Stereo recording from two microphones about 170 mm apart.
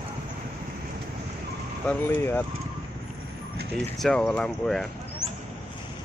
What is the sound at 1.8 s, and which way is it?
Speech, 10° left (ahead or behind).